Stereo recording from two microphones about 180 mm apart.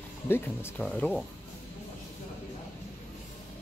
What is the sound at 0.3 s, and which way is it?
Speech, 15° left (ahead or behind).